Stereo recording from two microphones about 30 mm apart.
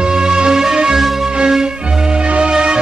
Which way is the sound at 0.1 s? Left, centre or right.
Centre.